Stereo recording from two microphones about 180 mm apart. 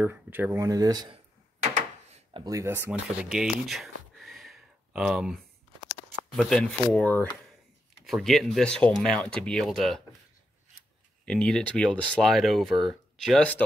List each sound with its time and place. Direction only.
0.0 s speech: 10° right (ahead or behind); by 1.7 s 30° right (ahead or behind)
1.7 s a sound: 35° right (ahead or behind)
2.4 s speech: 15° right (ahead or behind); by 10.0 s centre (ahead or behind)
11.2 s speech: 5° left (ahead or behind)